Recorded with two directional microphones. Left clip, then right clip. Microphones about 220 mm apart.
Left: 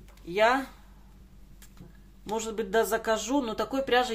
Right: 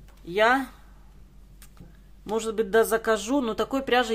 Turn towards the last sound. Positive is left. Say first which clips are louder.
# right 2 dB
turn(degrees=-25)  # may be behind; listen again after turning